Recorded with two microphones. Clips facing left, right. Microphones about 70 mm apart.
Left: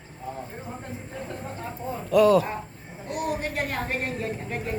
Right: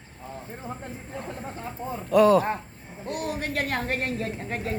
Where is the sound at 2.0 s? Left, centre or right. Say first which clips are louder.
Even; right.